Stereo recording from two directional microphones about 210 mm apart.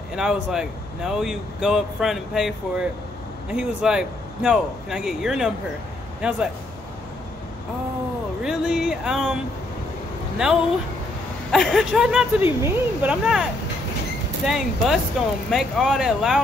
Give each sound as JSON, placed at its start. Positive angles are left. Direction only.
{"t": 0.1, "sound": "speech", "side_deg": -5}
{"t": 8.4, "sound": "speech", "side_deg": -5}
{"t": 10.4, "sound": "speech", "side_deg": -5}